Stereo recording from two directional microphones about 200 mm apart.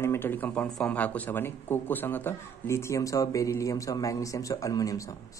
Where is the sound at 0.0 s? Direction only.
10° left (ahead or behind).